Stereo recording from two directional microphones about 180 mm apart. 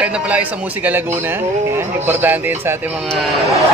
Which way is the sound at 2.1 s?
10° right (ahead or behind).